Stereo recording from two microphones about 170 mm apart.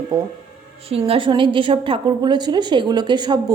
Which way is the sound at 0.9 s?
35° right (ahead or behind).